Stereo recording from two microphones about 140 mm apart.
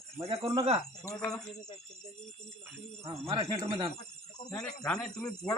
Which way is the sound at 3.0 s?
45° right (ahead or behind).